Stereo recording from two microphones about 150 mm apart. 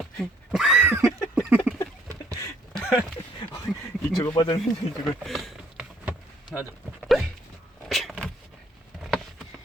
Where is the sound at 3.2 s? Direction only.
35° left (ahead or behind).